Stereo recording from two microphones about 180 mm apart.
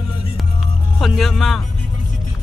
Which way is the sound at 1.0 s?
Centre (ahead or behind).